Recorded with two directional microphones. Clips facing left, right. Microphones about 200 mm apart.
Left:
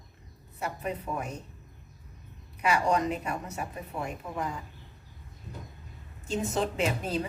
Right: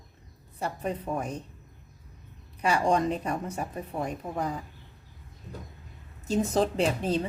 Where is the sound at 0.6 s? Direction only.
30° right (ahead or behind).